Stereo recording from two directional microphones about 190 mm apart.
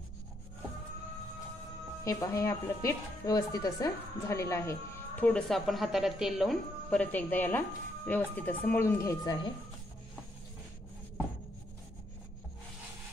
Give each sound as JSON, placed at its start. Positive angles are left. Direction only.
{"t": 2.0, "sound": "speech", "side_deg": 15}
{"t": 5.2, "sound": "speech", "side_deg": 5}